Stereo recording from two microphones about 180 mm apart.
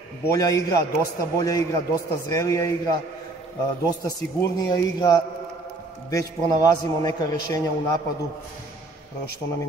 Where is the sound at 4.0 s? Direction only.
20° left (ahead or behind).